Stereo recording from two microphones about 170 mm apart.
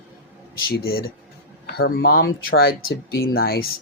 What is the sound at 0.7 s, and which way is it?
Speech, 65° left (ahead or behind).